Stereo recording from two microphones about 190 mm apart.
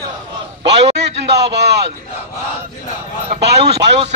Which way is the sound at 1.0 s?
60° right (ahead or behind).